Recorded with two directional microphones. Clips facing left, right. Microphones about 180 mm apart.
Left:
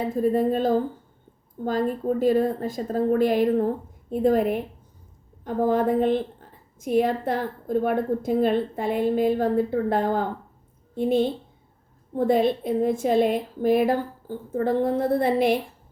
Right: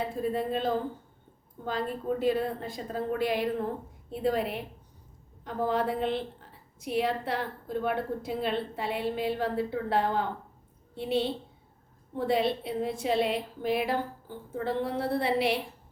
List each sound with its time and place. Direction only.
0.2 s a woman's voice: 45° left (ahead or behind)